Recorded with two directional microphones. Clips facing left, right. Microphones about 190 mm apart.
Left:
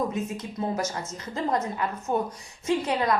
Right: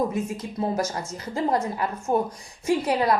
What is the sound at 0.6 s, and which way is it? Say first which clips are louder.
A woman's voice: right 3 dB; 30° right (ahead or behind).